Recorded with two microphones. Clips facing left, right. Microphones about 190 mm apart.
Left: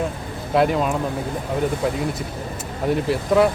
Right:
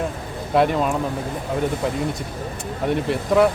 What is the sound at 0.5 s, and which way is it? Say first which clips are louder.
Speech: even; centre (ahead or behind).